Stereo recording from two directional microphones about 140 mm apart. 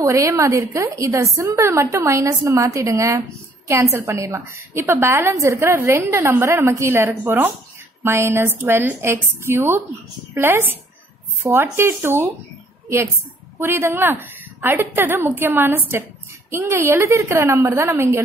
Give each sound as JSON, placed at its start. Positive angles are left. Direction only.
{"t": 0.0, "sound": "a woman's voice", "side_deg": -20}
{"t": 13.6, "sound": "a woman's voice", "side_deg": -15}